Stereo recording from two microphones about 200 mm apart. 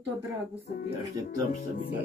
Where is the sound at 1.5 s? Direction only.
45° left (ahead or behind).